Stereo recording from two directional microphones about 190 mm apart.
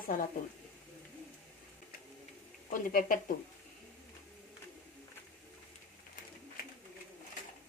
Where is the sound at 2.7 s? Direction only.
45° left (ahead or behind).